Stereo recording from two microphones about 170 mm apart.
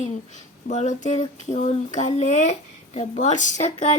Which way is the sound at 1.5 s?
45° left (ahead or behind).